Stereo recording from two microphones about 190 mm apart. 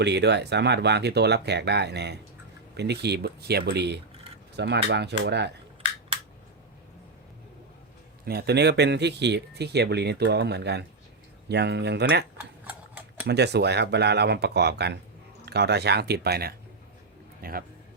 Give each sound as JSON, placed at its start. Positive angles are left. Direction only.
{"t": 0.0, "sound": "speech", "side_deg": -65}
{"t": 8.2, "sound": "speech", "side_deg": -55}
{"t": 13.2, "sound": "speech", "side_deg": -60}